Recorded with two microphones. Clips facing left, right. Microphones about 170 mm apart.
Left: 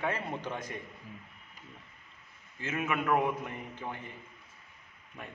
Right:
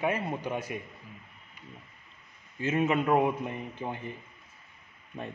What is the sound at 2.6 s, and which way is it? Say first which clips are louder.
A man's voice: right 6 dB; 25° right (ahead or behind).